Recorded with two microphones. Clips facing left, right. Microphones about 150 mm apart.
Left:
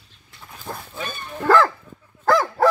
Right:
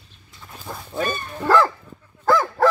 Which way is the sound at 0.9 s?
45° right (ahead or behind).